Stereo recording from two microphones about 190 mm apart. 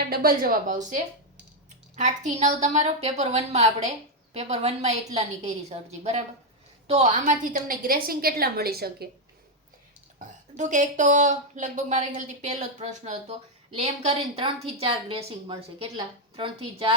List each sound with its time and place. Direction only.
0.1 s a woman's voice: 50° right (ahead or behind)
2.0 s a woman's voice: 40° right (ahead or behind); by 9.0 s 55° right (ahead or behind)
10.2 s speech: 40° right (ahead or behind)